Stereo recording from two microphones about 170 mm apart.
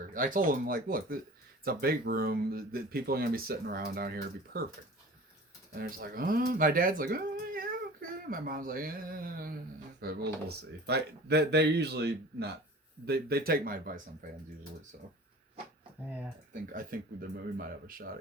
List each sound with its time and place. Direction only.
0.1 s speech: 55° right (ahead or behind)
5.7 s speech: 60° right (ahead or behind)
16.5 s speech: 50° right (ahead or behind)